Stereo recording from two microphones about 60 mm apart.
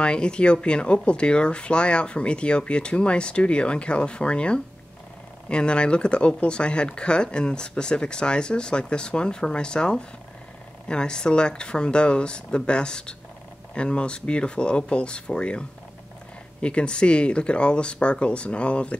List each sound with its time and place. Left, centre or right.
0.0 s speech: centre
16.6 s speech: centre